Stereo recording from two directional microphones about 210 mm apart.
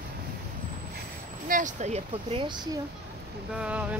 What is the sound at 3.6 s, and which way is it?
Speech, 5° right (ahead or behind).